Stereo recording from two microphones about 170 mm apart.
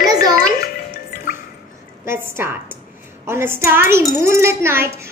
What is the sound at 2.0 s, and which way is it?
A woman's voice, 15° right (ahead or behind).